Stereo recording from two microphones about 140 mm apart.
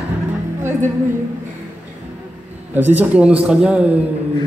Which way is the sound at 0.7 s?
15° right (ahead or behind).